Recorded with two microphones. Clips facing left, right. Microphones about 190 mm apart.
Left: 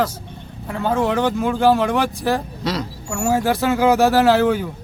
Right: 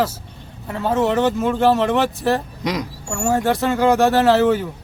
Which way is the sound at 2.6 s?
15° right (ahead or behind).